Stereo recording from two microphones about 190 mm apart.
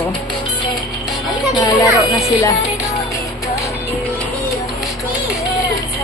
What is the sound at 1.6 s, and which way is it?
Children playing, 25° left (ahead or behind).